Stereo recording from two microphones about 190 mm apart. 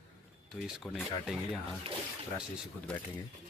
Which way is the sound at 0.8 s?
Centre (ahead or behind).